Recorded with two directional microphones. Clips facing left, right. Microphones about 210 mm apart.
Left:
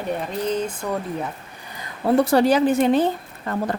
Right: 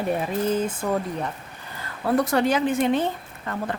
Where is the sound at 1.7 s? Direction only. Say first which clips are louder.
Left 4 dB; 20° left (ahead or behind); by 3.8 s 35° left (ahead or behind).